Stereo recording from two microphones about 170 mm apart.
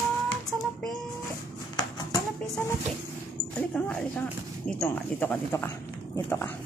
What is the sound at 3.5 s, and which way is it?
Speech, 5° left (ahead or behind).